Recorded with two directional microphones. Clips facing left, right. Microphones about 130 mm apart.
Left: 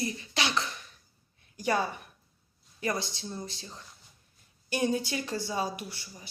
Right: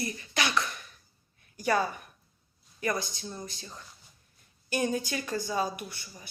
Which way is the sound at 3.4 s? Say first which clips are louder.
Left 1 dB; 30° left (ahead or behind).